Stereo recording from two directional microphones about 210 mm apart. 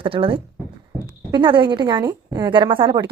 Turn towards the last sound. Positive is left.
turn(degrees=-20)  # may be behind; listen again after turning